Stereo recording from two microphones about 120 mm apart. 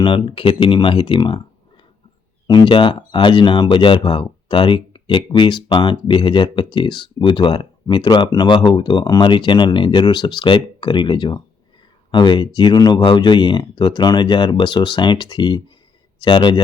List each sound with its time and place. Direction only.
0.0 s speech: 45° left (ahead or behind)
2.5 s speech: 40° left (ahead or behind)